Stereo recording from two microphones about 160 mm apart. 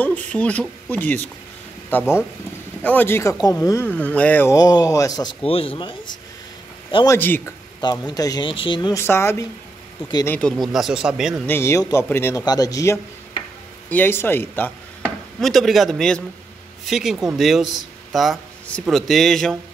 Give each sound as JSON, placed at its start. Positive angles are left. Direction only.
{"t": 0.0, "sound": "speech", "side_deg": 10}
{"t": 4.6, "sound": "speech", "side_deg": 25}
{"t": 5.5, "sound": "speech", "side_deg": 35}
{"t": 7.1, "sound": "speech", "side_deg": 10}
{"t": 8.1, "sound": "speech", "side_deg": 25}
{"t": 8.9, "sound": "speech", "side_deg": 15}
{"t": 10.6, "sound": "speech", "side_deg": 0}
{"t": 11.4, "sound": "speech", "side_deg": 15}
{"t": 15.0, "sound": "chopping", "side_deg": 0}
{"t": 16.8, "sound": "speech", "side_deg": 0}